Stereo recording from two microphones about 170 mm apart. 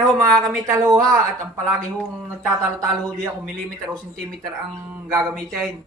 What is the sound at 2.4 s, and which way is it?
Speech, 15° right (ahead or behind).